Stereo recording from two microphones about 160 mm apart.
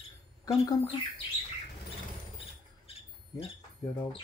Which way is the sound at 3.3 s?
20° left (ahead or behind).